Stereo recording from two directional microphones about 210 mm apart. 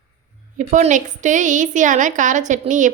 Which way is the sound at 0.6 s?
35° right (ahead or behind).